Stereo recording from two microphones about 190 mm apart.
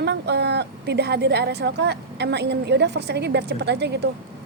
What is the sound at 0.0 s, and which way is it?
A woman's voice, 60° right (ahead or behind).